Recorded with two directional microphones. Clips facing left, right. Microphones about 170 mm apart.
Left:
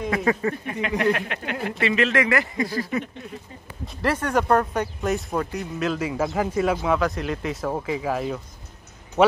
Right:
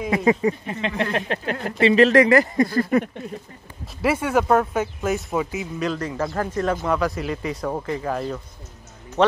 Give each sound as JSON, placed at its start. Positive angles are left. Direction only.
{"t": 0.1, "sound": "speech", "side_deg": -20}
{"t": 1.1, "sound": "speech", "side_deg": -35}
{"t": 3.8, "sound": "speech", "side_deg": -10}